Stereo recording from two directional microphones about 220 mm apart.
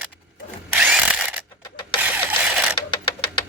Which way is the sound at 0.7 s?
5° right (ahead or behind).